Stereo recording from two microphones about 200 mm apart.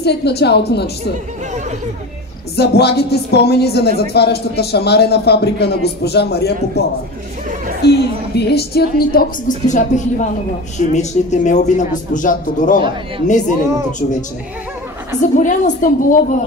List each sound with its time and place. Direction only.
0.0 s speech: 55° left (ahead or behind)
2.5 s speech: 55° left (ahead or behind)
7.8 s a woman's voice: 55° left (ahead or behind)
15.3 s speech: 40° left (ahead or behind)